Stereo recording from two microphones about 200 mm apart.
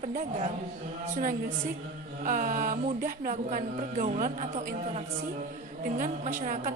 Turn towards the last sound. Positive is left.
turn(degrees=-40)  # may be behind; listen again after turning